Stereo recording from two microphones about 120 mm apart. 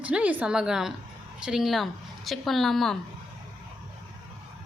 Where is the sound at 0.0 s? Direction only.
10° right (ahead or behind).